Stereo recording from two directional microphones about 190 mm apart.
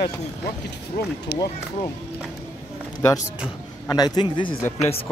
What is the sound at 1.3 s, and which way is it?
Speech, 60° left (ahead or behind).